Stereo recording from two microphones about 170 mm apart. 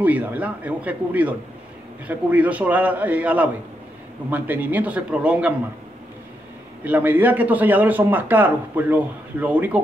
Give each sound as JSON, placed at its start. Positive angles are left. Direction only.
{"t": 0.0, "sound": "a man's voice", "side_deg": -10}
{"t": 6.8, "sound": "a man's voice", "side_deg": -10}